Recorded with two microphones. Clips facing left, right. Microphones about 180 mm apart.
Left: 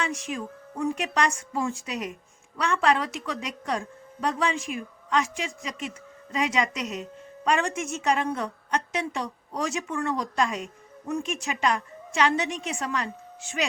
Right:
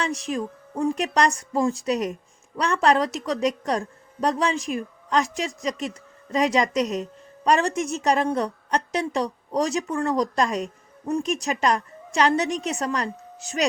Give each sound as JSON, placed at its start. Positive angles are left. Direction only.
{"t": 0.0, "sound": "speech", "side_deg": -35}